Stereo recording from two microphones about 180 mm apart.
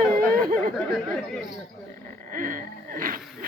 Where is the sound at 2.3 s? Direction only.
50° right (ahead or behind).